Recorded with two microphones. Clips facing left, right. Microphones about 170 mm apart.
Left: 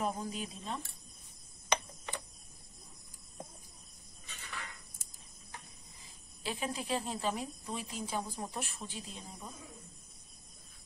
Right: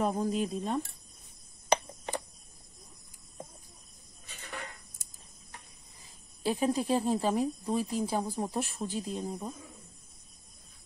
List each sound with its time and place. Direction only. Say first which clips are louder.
0.0 s speech: right 7 dB; 45° right (ahead or behind)
1.7 s a sound: right 6 dB; 40° right (ahead or behind)
6.4 s speech: right 10 dB; 40° right (ahead or behind)